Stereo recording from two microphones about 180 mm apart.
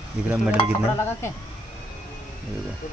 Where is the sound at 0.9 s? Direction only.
15° left (ahead or behind).